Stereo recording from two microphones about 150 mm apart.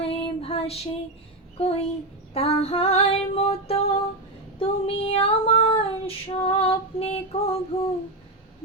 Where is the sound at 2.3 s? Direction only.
40° left (ahead or behind).